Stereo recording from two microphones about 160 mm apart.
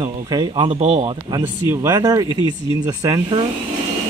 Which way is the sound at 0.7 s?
45° right (ahead or behind).